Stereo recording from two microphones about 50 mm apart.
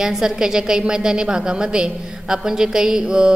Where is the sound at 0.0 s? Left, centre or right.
Centre.